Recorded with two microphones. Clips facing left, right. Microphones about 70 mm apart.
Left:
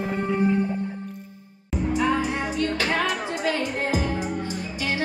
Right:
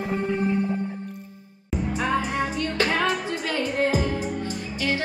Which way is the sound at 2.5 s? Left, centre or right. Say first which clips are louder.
Even; right.